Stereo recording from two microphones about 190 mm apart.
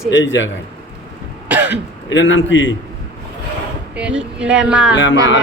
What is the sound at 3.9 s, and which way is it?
Speech, 5° right (ahead or behind).